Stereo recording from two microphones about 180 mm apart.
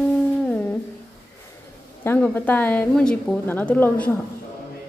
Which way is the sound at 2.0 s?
10° left (ahead or behind).